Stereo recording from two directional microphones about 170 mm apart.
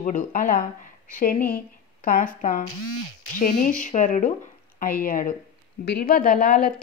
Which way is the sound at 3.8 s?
50° left (ahead or behind).